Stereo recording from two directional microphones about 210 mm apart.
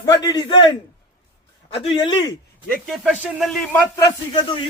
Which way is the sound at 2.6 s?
Centre (ahead or behind).